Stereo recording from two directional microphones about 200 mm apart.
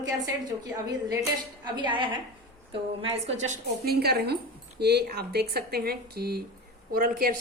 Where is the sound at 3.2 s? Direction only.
75° right (ahead or behind).